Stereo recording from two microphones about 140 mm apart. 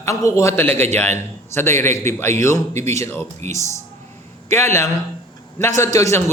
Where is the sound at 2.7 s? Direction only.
55° right (ahead or behind).